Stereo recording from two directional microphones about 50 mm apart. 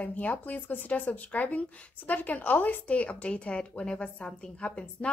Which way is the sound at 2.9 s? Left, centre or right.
Left.